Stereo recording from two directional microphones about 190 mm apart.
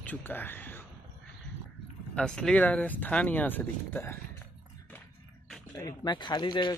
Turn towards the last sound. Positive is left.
turn(degrees=25)  # may be behind; listen again after turning